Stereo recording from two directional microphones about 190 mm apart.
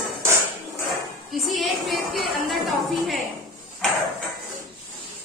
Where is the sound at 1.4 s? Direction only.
Centre (ahead or behind).